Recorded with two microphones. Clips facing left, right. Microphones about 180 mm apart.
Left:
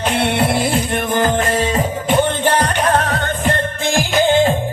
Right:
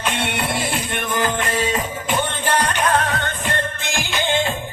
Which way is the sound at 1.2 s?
30° left (ahead or behind).